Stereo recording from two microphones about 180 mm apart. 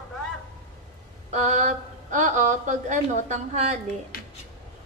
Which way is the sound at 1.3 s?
40° right (ahead or behind).